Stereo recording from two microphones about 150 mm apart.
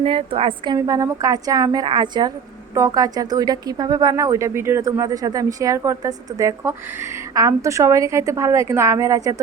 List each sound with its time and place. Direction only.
0.0 s a woman's voice: 40° right (ahead or behind)
0.8 s speech: 20° right (ahead or behind)